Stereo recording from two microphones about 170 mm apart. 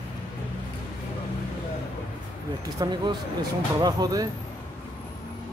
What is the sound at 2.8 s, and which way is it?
Speech, 20° right (ahead or behind).